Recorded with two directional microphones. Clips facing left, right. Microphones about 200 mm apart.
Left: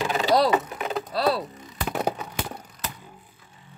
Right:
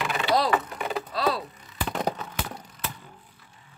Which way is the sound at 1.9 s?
10° left (ahead or behind).